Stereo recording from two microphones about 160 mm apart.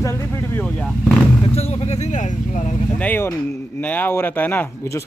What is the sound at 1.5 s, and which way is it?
Vehicle, 40° left (ahead or behind).